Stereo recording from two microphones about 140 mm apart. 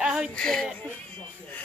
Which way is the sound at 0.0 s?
5° right (ahead or behind).